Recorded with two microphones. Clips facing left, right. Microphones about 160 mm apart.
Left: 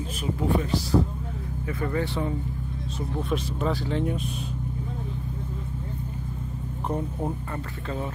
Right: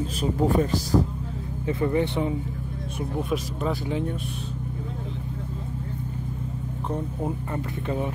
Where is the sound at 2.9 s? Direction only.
5° right (ahead or behind).